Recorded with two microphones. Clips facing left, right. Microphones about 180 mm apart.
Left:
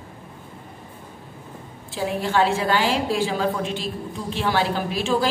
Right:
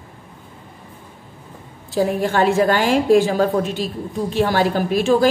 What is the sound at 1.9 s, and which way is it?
A woman's voice, 45° right (ahead or behind).